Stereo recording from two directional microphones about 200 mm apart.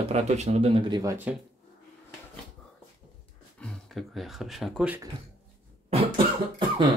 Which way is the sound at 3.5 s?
Centre (ahead or behind).